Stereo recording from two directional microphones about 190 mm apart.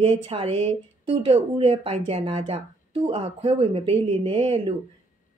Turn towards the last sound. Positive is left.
turn(degrees=-25)  # may be behind; listen again after turning